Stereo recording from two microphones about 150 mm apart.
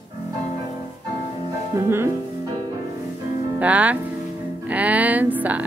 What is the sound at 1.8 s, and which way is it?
Speech, 15° right (ahead or behind).